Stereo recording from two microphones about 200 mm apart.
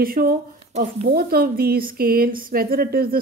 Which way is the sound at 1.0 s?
50° right (ahead or behind).